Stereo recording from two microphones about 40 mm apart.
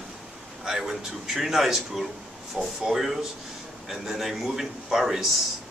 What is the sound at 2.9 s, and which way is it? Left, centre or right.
A man's voice, centre.